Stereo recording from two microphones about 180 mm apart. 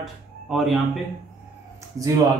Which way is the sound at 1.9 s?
20° right (ahead or behind).